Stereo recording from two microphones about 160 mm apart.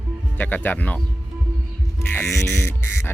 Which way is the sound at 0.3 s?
10° left (ahead or behind).